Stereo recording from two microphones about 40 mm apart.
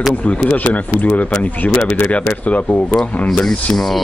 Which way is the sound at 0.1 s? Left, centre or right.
Left.